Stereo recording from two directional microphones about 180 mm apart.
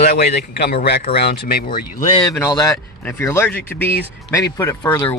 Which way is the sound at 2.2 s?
15° left (ahead or behind).